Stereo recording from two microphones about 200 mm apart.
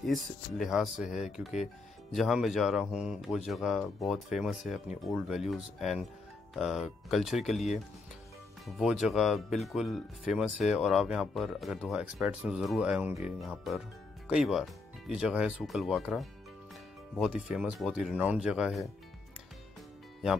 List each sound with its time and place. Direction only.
0.0 s speech: centre (ahead or behind)
8.6 s speech: centre (ahead or behind)